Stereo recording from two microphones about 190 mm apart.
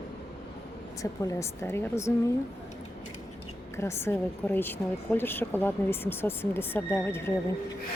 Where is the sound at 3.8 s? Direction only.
15° left (ahead or behind).